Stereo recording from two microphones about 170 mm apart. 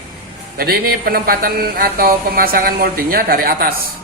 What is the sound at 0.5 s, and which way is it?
Speech, 65° right (ahead or behind).